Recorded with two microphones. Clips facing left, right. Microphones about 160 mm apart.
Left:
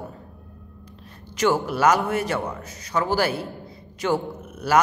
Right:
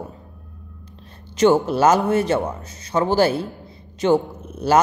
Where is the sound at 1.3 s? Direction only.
25° right (ahead or behind).